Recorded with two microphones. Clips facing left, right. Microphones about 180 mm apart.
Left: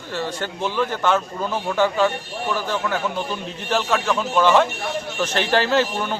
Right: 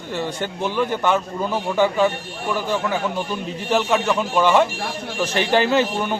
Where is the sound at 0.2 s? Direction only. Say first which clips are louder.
Even; 15° right (ahead or behind).